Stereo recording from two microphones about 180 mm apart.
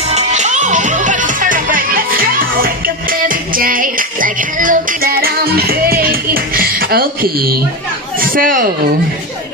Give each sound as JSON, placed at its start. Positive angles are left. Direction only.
{"t": 0.1, "sound": "music", "side_deg": -40}
{"t": 8.2, "sound": "speech", "side_deg": -50}